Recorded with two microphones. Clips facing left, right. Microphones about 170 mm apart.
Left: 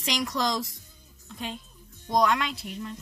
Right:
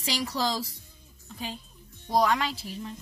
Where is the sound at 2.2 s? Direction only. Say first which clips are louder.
Left 1 dB; centre (ahead or behind).